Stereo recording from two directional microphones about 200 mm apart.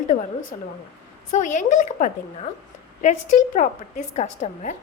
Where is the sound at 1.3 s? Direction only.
40° left (ahead or behind).